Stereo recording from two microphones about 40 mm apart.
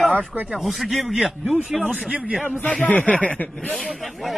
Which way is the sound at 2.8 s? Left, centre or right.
Left.